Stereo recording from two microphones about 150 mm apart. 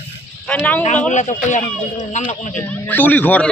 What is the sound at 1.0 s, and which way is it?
Speech, 55° left (ahead or behind).